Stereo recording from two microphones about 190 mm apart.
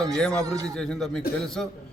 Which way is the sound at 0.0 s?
5° left (ahead or behind).